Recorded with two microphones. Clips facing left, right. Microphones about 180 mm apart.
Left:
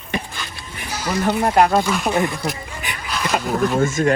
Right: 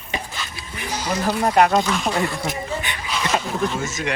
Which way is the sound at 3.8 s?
50° left (ahead or behind).